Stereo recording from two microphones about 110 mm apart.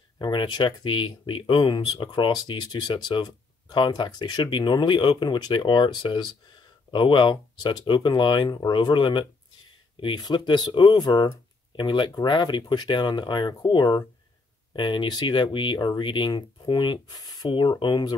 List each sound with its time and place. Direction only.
0.2 s speech: 45° left (ahead or behind)